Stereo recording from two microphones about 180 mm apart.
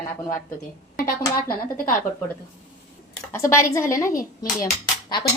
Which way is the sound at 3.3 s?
15° left (ahead or behind).